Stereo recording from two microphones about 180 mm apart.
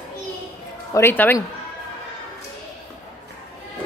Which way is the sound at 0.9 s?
10° left (ahead or behind).